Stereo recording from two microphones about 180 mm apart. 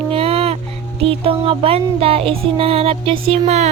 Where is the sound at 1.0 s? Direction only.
30° right (ahead or behind).